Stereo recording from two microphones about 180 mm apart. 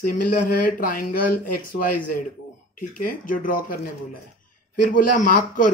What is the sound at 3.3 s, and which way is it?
Speech, 50° left (ahead or behind).